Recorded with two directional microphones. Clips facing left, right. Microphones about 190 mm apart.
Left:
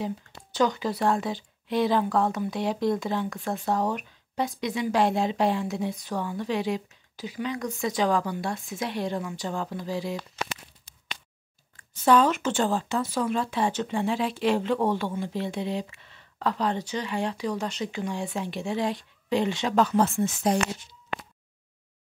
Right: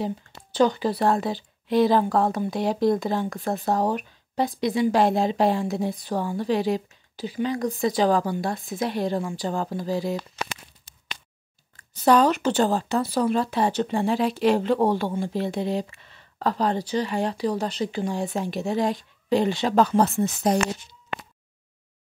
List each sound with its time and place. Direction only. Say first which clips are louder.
0.0 s speech: right 3 dB; 30° right (ahead or behind)
11.7 s speech: right 2 dB; 35° right (ahead or behind)